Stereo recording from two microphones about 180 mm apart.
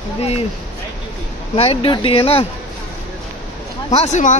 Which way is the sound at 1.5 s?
30° left (ahead or behind).